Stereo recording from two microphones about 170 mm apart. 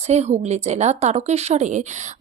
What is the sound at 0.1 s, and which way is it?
A woman's voice, 40° right (ahead or behind).